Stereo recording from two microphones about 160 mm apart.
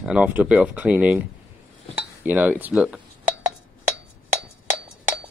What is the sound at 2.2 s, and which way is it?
Speech, 10° right (ahead or behind).